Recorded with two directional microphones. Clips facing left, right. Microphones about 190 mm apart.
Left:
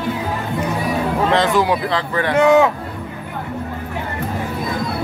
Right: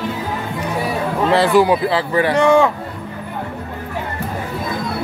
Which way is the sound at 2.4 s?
5° left (ahead or behind).